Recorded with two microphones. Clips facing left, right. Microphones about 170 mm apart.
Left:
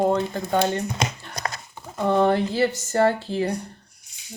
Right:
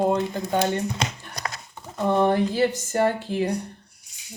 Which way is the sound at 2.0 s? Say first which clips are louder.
Left 1 dB; 15° right (ahead or behind).